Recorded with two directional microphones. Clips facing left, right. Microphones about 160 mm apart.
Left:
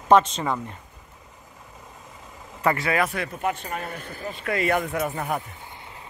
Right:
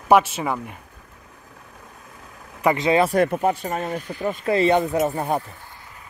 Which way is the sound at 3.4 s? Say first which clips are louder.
Right 6 dB; 40° right (ahead or behind).